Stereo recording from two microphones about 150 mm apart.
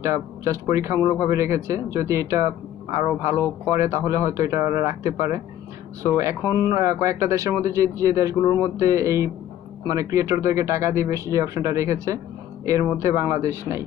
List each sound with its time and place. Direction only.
0.0 s speech: 20° right (ahead or behind)